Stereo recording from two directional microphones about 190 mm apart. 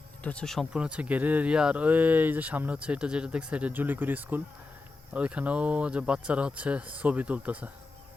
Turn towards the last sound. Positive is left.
turn(degrees=-10)  # may be behind; listen again after turning